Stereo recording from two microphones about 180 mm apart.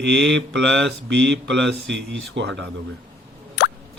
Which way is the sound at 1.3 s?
80° right.